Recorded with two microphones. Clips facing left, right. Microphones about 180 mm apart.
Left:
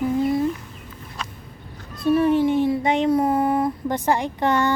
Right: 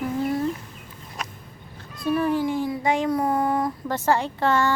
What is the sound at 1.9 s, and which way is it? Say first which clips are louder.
Cat: left 5 dB; centre (ahead or behind).